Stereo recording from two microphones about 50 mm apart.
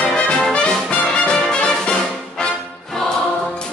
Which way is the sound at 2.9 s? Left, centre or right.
Centre.